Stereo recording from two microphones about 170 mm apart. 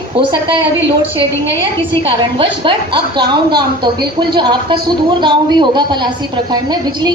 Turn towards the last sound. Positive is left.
turn(degrees=-25)  # may be behind; listen again after turning